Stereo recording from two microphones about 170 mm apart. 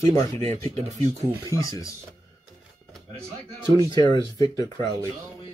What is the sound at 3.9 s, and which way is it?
Speech, 25° left (ahead or behind).